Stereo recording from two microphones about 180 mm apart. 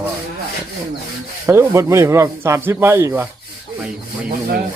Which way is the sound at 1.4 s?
15° right (ahead or behind).